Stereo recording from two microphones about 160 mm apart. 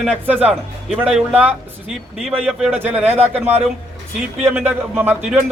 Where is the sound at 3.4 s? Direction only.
40° right (ahead or behind).